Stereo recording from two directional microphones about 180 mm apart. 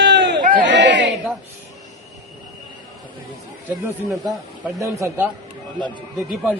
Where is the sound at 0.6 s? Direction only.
80° right.